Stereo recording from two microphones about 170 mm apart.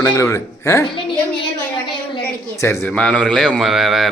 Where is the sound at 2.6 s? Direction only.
15° left (ahead or behind); by 4.1 s centre (ahead or behind).